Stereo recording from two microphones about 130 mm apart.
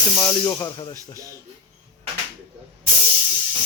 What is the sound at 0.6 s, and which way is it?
Speech, 35° left (ahead or behind).